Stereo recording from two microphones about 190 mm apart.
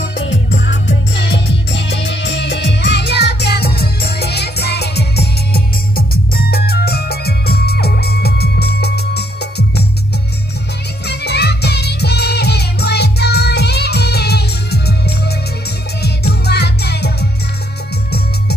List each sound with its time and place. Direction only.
0.0 s music: 75° left (ahead or behind); by 9.8 s 60° left (ahead or behind)
11.1 s music: 60° left (ahead or behind)